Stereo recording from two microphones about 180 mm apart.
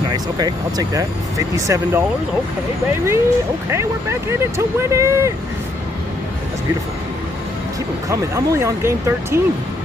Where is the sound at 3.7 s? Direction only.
15° right (ahead or behind).